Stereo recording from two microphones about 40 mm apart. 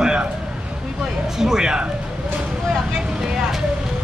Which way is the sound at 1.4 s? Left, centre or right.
Centre.